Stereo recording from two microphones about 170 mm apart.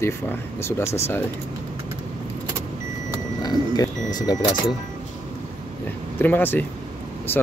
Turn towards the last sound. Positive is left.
turn(degrees=10)  # may be behind; listen again after turning